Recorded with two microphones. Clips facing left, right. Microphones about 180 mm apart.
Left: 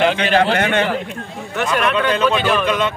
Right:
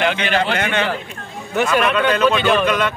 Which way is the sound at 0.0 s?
35° left (ahead or behind).